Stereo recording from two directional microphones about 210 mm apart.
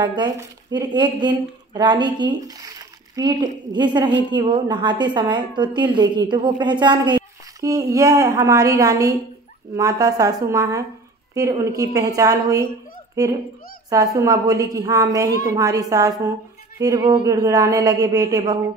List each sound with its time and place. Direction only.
0.0 s a woman's voice: 20° right (ahead or behind)